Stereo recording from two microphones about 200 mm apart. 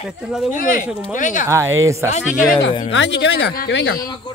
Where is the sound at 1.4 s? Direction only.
15° right (ahead or behind).